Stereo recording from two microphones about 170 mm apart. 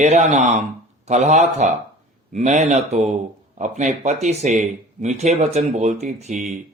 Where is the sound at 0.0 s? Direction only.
40° right (ahead or behind).